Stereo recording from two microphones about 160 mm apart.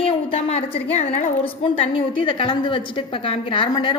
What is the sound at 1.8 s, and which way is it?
A woman's voice, 35° left (ahead or behind).